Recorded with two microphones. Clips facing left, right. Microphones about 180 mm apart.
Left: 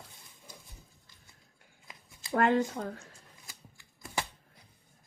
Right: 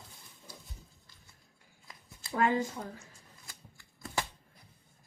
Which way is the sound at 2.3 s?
60° left (ahead or behind).